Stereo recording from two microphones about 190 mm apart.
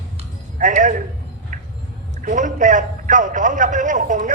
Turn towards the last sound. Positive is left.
turn(degrees=-40)  # may be behind; listen again after turning